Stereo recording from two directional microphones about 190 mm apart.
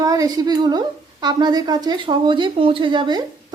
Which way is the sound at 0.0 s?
20° right (ahead or behind).